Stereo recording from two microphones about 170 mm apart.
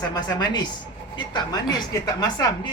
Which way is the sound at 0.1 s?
25° left (ahead or behind).